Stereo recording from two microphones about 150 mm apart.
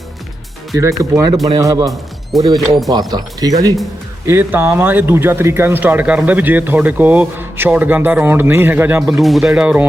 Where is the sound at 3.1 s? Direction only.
25° right (ahead or behind).